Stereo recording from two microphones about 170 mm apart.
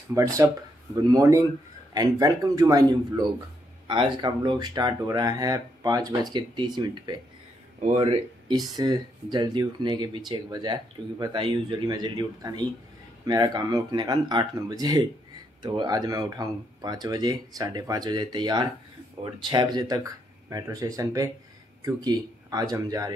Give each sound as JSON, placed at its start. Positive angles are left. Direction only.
{"t": 0.1, "sound": "speech", "side_deg": -20}